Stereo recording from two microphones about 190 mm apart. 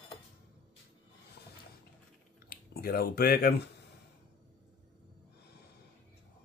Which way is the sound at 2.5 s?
50° left (ahead or behind).